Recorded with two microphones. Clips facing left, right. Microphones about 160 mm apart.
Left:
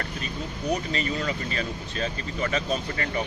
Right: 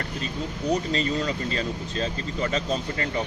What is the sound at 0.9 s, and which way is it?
Speech, 30° right (ahead or behind).